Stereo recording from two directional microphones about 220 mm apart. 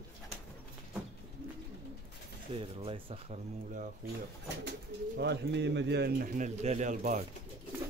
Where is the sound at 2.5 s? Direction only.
25° right (ahead or behind).